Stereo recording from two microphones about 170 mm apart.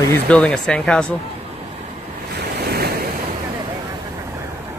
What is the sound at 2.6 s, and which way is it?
Waves, 65° right (ahead or behind).